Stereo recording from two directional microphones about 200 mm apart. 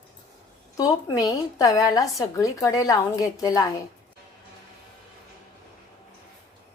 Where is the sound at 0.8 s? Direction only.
20° left (ahead or behind).